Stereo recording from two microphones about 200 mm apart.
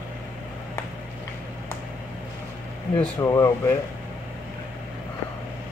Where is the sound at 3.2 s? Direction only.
15° left (ahead or behind).